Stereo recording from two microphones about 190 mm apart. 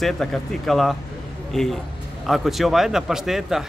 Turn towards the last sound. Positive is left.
turn(degrees=0)  # may be behind; listen again after turning